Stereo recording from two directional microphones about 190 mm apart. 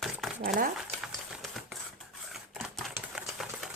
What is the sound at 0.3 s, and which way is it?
Speech, 50° right (ahead or behind).